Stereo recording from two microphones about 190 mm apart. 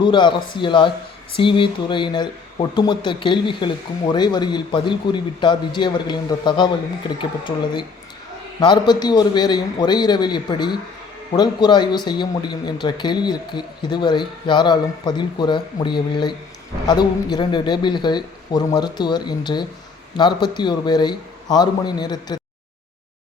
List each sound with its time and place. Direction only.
0.0 s speech: 25° left (ahead or behind)